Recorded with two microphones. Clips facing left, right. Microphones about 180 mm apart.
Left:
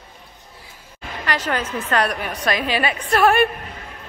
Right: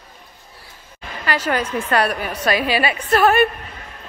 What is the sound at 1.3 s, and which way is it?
A woman's voice, 10° right (ahead or behind).